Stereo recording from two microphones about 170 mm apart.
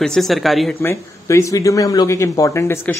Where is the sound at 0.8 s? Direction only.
15° left (ahead or behind).